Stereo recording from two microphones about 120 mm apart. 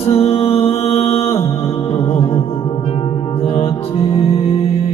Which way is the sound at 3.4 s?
55° left (ahead or behind).